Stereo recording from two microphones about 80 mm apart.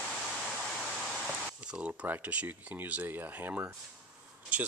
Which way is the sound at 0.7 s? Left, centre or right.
Centre.